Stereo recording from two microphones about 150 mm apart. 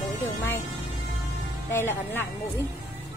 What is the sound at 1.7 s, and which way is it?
Speech, 15° left (ahead or behind).